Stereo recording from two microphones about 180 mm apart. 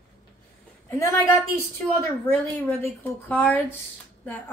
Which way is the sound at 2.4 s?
10° left (ahead or behind).